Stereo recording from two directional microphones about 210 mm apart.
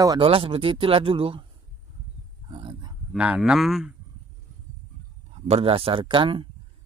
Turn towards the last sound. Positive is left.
turn(degrees=-25)  # may be behind; listen again after turning